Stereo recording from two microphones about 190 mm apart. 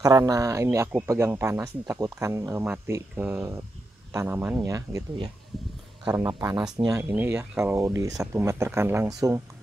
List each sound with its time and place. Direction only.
0.0 s speech: 20° right (ahead or behind)